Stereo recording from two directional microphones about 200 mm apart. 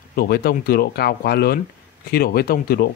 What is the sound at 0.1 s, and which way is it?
A man's voice, 50° left (ahead or behind).